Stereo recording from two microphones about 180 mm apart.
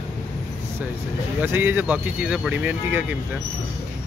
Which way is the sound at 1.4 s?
10° right (ahead or behind).